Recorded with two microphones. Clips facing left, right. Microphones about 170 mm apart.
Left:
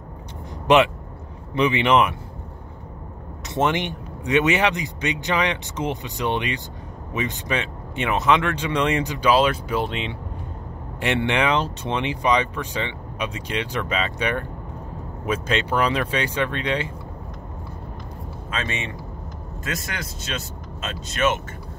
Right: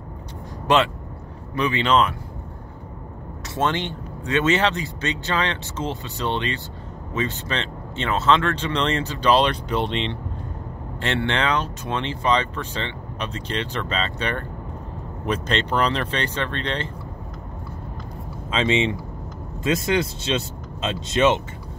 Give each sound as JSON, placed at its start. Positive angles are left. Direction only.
{"t": 1.5, "sound": "speech", "side_deg": 20}
{"t": 3.4, "sound": "a man's voice", "side_deg": 20}
{"t": 11.0, "sound": "a man's voice", "side_deg": 15}
{"t": 18.5, "sound": "speech", "side_deg": -20}